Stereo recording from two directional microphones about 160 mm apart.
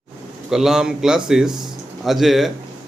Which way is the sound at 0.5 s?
5° right (ahead or behind).